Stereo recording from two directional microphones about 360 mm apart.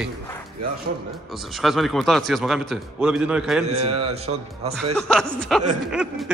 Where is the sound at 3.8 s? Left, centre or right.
Centre.